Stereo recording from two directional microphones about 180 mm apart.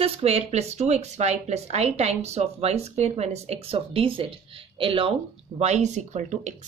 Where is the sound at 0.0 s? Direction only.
35° right (ahead or behind).